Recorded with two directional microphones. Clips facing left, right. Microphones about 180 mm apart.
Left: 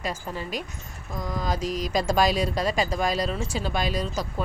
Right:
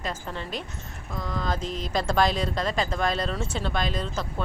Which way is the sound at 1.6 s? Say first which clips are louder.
Left 4 dB; 25° right (ahead or behind).